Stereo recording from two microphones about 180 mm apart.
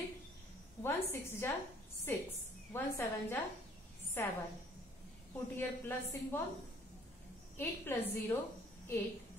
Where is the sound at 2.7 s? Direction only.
15° left (ahead or behind).